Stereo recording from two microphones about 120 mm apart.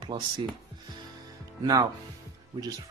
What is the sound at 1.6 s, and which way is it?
Speech, 35° right (ahead or behind).